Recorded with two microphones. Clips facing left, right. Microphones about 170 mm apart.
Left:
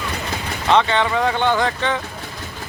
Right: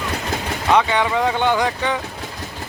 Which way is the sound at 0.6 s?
10° right (ahead or behind).